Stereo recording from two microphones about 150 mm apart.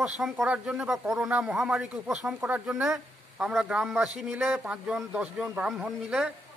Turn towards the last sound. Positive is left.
turn(degrees=-5)  # may be behind; listen again after turning